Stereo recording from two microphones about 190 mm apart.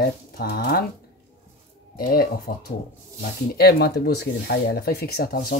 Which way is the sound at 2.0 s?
50° left (ahead or behind).